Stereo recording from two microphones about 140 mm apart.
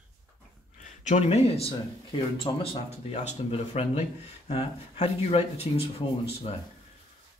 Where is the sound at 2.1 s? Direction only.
40° left (ahead or behind).